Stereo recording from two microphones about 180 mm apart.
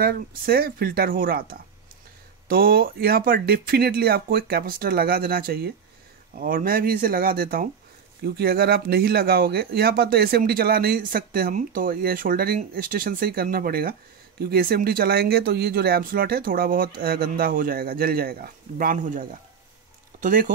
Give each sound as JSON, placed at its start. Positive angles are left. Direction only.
{"t": 0.0, "sound": "speech", "side_deg": -60}